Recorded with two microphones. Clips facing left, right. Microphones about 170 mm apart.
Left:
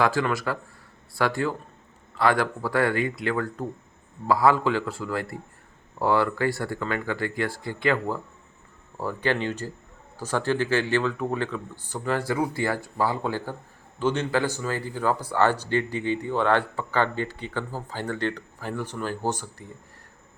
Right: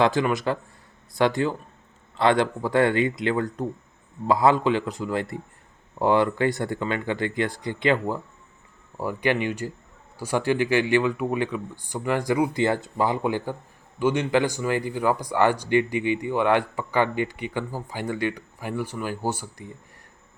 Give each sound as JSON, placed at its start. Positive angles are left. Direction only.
{"t": 0.0, "sound": "speech", "side_deg": -20}